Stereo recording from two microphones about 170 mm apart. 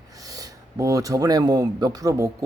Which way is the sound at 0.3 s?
20° right (ahead or behind).